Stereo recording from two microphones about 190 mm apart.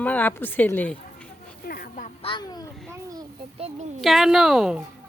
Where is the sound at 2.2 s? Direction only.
25° left (ahead or behind).